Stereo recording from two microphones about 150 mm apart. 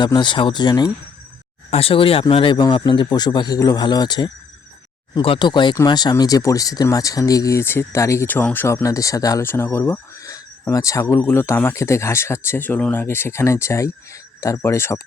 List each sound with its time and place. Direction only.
0.0 s speech: 30° left (ahead or behind)
1.7 s speech: 40° left (ahead or behind); by 15.0 s 20° left (ahead or behind)